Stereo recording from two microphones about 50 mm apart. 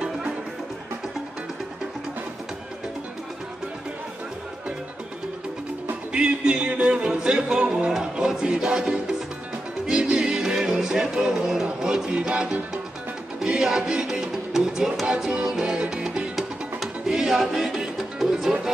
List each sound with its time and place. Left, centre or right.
6.1 s music: centre